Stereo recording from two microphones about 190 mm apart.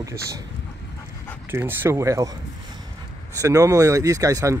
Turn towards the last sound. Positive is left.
turn(degrees=-20)  # may be behind; listen again after turning